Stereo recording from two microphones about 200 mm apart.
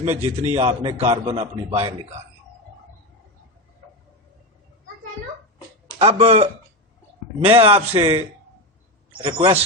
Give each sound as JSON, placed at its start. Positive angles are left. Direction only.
{"t": 0.0, "sound": "a man's voice", "side_deg": -30}
{"t": 6.0, "sound": "a man's voice", "side_deg": -30}
{"t": 9.2, "sound": "a man's voice", "side_deg": -25}